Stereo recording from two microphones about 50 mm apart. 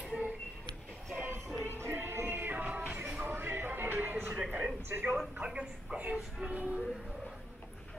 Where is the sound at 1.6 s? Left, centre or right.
Right.